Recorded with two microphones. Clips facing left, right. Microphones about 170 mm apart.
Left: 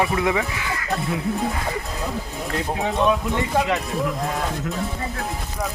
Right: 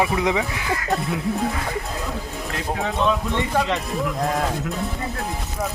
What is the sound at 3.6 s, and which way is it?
Speech, centre (ahead or behind).